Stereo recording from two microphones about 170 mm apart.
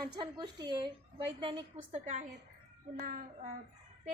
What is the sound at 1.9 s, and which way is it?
Speech, 45° right (ahead or behind).